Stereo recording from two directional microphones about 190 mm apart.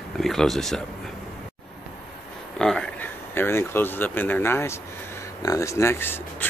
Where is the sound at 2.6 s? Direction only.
5° left (ahead or behind).